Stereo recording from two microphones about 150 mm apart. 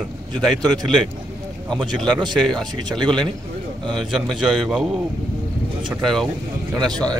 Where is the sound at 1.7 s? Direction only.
5° left (ahead or behind).